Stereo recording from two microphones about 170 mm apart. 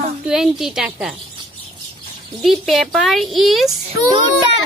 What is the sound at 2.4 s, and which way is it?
Speech, centre (ahead or behind).